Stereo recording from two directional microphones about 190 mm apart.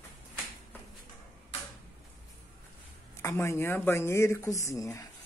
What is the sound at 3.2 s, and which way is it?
Speech, 15° left (ahead or behind).